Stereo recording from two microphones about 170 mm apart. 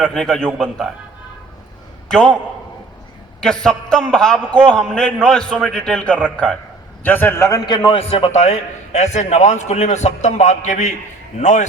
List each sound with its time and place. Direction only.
0.0 s a man's voice: 5° left (ahead or behind)
2.0 s a man's voice: 5° left (ahead or behind)
3.4 s a man's voice: 5° left (ahead or behind); by 11.6 s 45° left (ahead or behind)